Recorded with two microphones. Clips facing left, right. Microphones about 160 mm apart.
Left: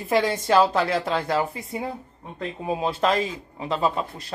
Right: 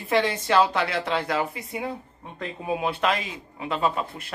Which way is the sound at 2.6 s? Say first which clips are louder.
Left 2 dB; 30° left (ahead or behind).